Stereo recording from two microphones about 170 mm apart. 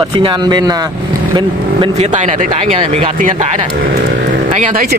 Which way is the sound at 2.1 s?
45° right (ahead or behind).